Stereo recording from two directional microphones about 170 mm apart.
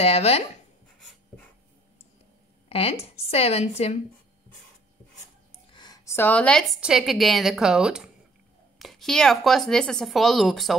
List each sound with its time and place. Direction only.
0.0 s speech: 35° left (ahead or behind)
2.7 s speech: 35° left (ahead or behind)
5.7 s a sound: 25° left (ahead or behind)
6.1 s speech: 10° left (ahead or behind)